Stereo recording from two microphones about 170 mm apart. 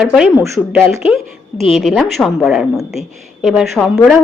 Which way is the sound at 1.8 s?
Centre (ahead or behind).